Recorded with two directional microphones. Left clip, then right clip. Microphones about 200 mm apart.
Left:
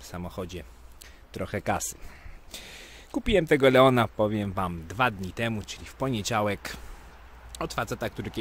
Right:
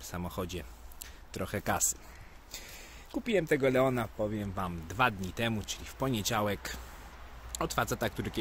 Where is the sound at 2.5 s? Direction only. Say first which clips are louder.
Left 4 dB; 30° left (ahead or behind).